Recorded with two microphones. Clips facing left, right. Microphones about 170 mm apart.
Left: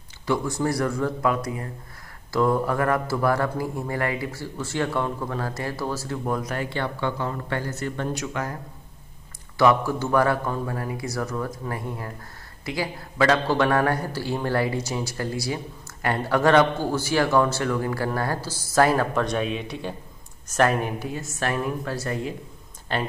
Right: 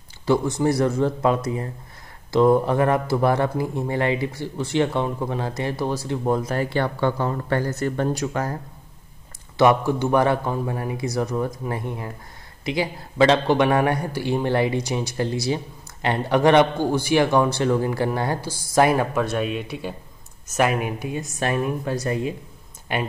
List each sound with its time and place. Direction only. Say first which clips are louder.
0.3 s speech: right 4 dB; 20° right (ahead or behind)
9.6 s a woman's voice: right 2 dB; 20° right (ahead or behind)